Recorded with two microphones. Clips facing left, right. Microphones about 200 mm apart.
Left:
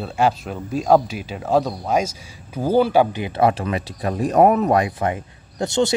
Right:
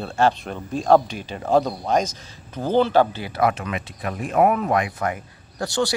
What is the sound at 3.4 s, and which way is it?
Speech, 30° left (ahead or behind).